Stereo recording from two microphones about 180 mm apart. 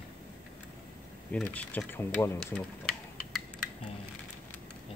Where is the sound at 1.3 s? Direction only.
5° left (ahead or behind).